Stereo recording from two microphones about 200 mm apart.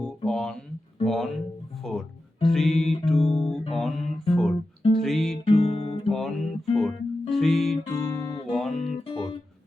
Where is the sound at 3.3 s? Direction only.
Centre (ahead or behind).